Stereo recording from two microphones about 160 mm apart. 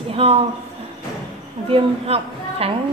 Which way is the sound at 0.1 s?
40° right (ahead or behind).